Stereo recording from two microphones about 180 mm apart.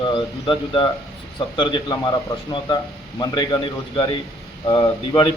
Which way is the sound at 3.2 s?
25° left (ahead or behind).